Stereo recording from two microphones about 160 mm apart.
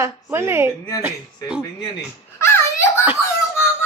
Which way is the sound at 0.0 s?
15° right (ahead or behind).